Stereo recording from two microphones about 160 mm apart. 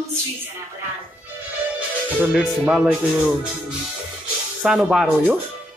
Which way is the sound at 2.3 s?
5° right (ahead or behind).